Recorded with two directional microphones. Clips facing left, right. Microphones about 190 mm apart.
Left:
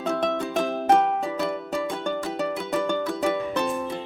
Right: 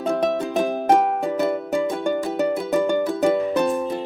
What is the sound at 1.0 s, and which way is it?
Music, centre (ahead or behind).